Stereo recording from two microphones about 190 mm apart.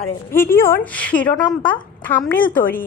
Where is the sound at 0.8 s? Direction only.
5° left (ahead or behind).